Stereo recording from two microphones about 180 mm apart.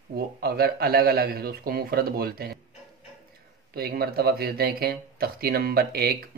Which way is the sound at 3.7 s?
60° right (ahead or behind).